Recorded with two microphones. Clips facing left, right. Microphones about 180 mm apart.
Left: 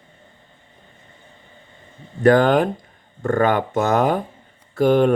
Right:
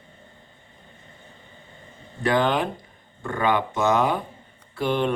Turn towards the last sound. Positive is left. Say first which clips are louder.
# left 8 dB
turn(degrees=45)  # may be behind; listen again after turning